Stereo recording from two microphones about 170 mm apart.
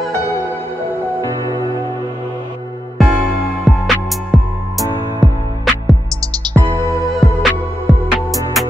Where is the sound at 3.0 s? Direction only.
Centre (ahead or behind).